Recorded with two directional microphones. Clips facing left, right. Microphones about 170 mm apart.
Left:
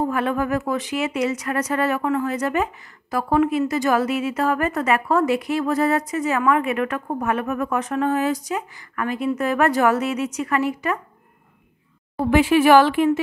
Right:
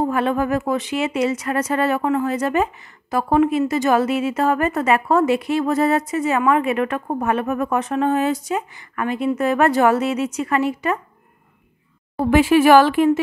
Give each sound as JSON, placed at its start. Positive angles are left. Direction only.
{"t": 0.0, "sound": "speech", "side_deg": -25}
{"t": 12.2, "sound": "speech", "side_deg": -45}